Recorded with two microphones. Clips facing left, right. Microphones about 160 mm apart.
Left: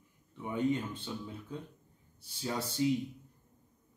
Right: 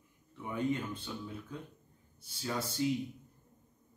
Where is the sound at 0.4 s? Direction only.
20° left (ahead or behind).